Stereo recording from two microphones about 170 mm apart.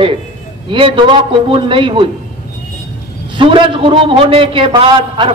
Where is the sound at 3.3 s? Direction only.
30° right (ahead or behind).